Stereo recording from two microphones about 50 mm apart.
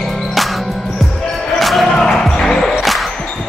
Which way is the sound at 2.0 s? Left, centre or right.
Centre.